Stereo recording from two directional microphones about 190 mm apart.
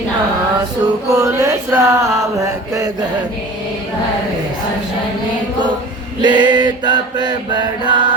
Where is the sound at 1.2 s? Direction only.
15° right (ahead or behind).